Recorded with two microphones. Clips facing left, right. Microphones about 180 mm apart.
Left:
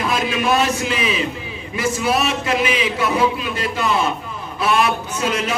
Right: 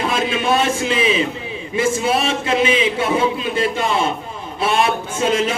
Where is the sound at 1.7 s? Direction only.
25° right (ahead or behind).